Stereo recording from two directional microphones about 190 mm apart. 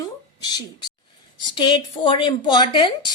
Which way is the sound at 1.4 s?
25° left (ahead or behind).